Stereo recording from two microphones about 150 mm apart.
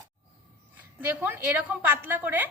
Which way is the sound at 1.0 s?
10° right (ahead or behind).